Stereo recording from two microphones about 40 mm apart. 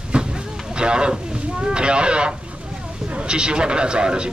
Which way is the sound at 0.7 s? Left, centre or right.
Right.